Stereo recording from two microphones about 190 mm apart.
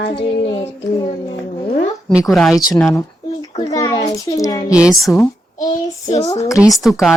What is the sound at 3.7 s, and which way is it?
A child's voice, 20° left (ahead or behind).